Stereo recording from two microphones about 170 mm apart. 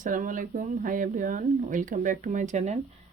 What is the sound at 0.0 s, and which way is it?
Speech, 50° right (ahead or behind).